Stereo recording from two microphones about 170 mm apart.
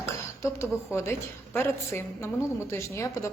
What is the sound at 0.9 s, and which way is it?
A woman's voice, 15° left (ahead or behind).